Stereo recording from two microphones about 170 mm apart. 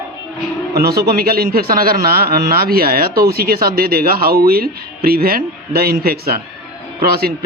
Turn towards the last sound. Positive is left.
turn(degrees=-65)  # may be behind; listen again after turning